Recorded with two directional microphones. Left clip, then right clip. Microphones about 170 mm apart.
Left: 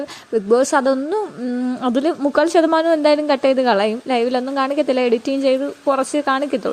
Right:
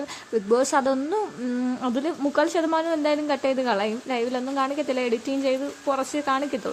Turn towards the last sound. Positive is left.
turn(degrees=35)  # may be behind; listen again after turning